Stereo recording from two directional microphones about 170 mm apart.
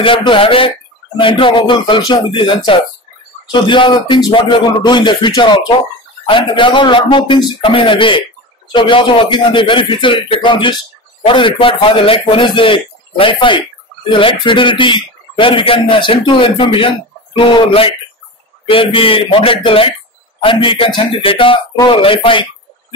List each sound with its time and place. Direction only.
0.0 s speech: 30° left (ahead or behind)
18.7 s speech: 30° left (ahead or behind)